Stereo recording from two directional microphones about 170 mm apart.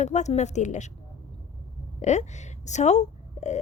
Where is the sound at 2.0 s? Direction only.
45° left (ahead or behind).